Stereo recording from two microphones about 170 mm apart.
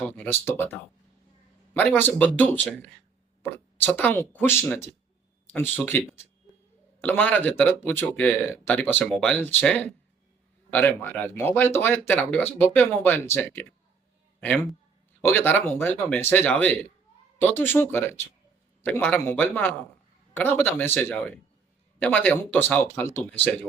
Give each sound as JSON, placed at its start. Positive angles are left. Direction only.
{"t": 0.3, "sound": "speech", "side_deg": 15}